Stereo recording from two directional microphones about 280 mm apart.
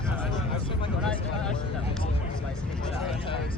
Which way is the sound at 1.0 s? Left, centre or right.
Centre.